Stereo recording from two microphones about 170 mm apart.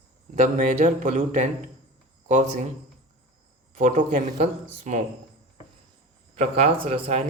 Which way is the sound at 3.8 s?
50° right (ahead or behind).